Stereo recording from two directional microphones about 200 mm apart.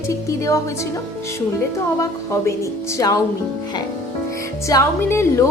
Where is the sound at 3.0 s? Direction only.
15° left (ahead or behind).